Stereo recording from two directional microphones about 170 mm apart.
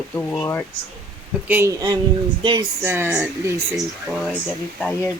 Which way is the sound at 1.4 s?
15° right (ahead or behind).